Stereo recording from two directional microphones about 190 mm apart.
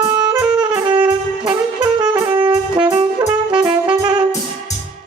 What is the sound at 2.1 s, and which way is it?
Music, 25° right (ahead or behind).